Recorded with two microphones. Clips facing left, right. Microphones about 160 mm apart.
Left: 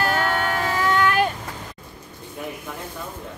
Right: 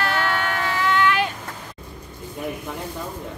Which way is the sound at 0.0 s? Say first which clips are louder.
Left 1 dB; 40° left (ahead or behind).